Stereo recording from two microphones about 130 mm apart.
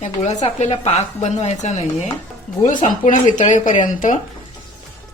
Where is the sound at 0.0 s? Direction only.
65° left (ahead or behind).